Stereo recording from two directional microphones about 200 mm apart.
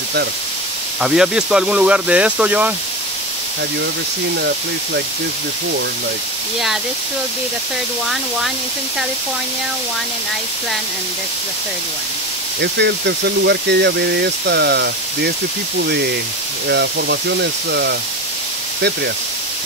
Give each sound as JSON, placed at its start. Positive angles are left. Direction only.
{"t": 1.0, "sound": "speech", "side_deg": -5}
{"t": 12.5, "sound": "speech", "side_deg": -60}
{"t": 16.6, "sound": "speech", "side_deg": -55}